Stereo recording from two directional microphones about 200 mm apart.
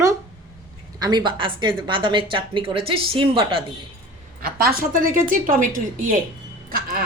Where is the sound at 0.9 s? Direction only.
20° right (ahead or behind).